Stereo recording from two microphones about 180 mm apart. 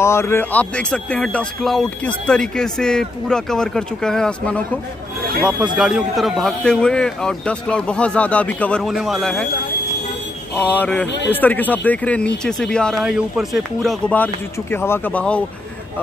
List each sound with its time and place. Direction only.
0.0 s speech: 15° left (ahead or behind)
5.8 s speech: 5° right (ahead or behind)
10.5 s speech: 10° left (ahead or behind)